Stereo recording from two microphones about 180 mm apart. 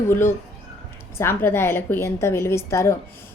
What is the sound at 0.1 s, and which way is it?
A woman's voice, 15° left (ahead or behind).